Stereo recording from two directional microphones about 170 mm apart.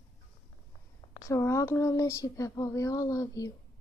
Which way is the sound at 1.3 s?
15° left (ahead or behind).